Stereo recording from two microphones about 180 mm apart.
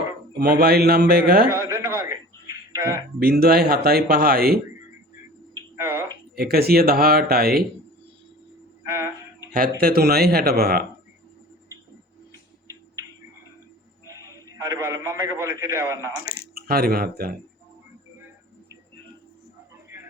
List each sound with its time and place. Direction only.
0.3 s speech: 60° right (ahead or behind)
1.5 s a man's voice: 15° right (ahead or behind)
3.2 s speech: 60° right (ahead or behind)
5.7 s a sound: 15° right (ahead or behind)
6.3 s speech: 60° right (ahead or behind)
8.9 s a sound: 15° right (ahead or behind)
9.5 s speech: 55° right (ahead or behind)
14.1 s a man's voice: 20° right (ahead or behind)
16.1 s speech: 55° left (ahead or behind)
16.6 s speech: 55° right (ahead or behind)